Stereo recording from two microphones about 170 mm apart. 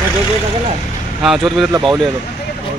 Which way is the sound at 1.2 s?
Centre (ahead or behind).